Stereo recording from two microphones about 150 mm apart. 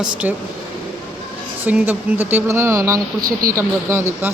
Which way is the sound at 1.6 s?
10° right (ahead or behind).